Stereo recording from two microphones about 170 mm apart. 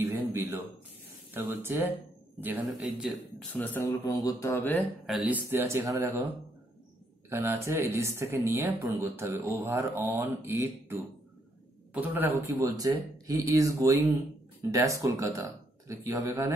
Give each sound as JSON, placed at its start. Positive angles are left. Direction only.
{"t": 0.0, "sound": "a sound", "side_deg": -15}
{"t": 1.3, "sound": "speech", "side_deg": -15}
{"t": 3.5, "sound": "speech", "side_deg": 10}
{"t": 5.0, "sound": "speech", "side_deg": -5}
{"t": 5.5, "sound": "speech", "side_deg": -15}
{"t": 7.2, "sound": "speech", "side_deg": -15}